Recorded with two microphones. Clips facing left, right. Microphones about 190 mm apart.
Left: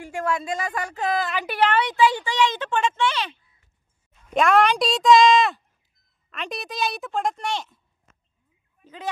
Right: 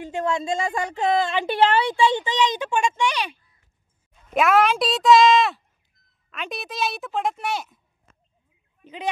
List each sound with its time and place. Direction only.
0.0 s a child's voice: 25° right (ahead or behind)
8.1 s a sound: 35° right (ahead or behind)
8.8 s speech: 20° right (ahead or behind)